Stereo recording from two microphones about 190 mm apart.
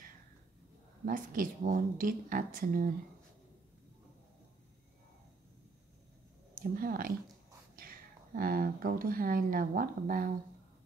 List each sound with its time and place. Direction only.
1.0 s speech: 45° right (ahead or behind)
6.5 s speech: 50° right (ahead or behind)